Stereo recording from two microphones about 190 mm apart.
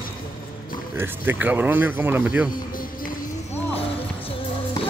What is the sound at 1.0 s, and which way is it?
Speech, 10° right (ahead or behind).